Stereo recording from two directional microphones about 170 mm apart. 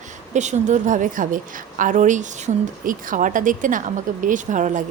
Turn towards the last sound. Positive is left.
turn(degrees=-50)  # may be behind; listen again after turning